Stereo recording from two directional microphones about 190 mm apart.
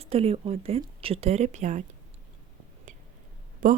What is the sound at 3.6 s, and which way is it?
Speech, 45° right (ahead or behind).